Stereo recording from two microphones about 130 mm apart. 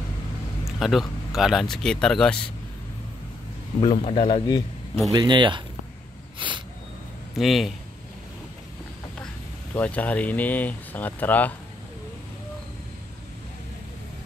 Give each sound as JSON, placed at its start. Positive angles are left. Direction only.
{"t": 0.7, "sound": "speech", "side_deg": 0}
{"t": 3.8, "sound": "a man's voice", "side_deg": 50}
{"t": 4.3, "sound": "speech", "side_deg": 35}
{"t": 5.1, "sound": "speech", "side_deg": -35}
{"t": 6.4, "sound": "a sound", "side_deg": -40}
{"t": 7.3, "sound": "speech", "side_deg": 0}
{"t": 9.8, "sound": "speech", "side_deg": 10}